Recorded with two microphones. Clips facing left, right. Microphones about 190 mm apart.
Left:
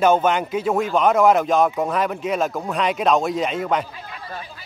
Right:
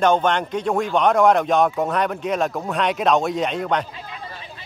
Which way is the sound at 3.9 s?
25° right (ahead or behind).